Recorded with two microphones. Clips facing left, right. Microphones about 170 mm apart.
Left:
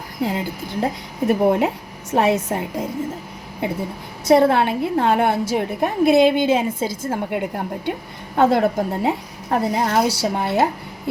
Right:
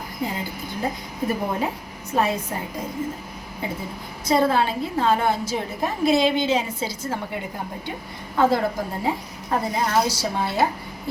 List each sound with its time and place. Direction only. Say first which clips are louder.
0.2 s a woman's voice: left 6 dB; 70° left (ahead or behind)
4.3 s a woman's voice: left 5 dB; 65° left (ahead or behind)